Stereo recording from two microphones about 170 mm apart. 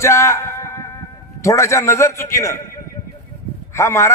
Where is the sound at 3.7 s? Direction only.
15° left (ahead or behind).